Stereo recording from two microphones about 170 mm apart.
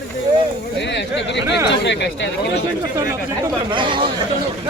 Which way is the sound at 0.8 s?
90° left.